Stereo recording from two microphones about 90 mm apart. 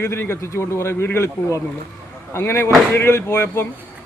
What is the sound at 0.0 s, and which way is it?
A man's voice, 30° left (ahead or behind).